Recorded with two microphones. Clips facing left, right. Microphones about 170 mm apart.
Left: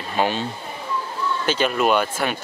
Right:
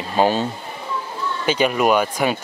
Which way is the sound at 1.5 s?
10° right (ahead or behind).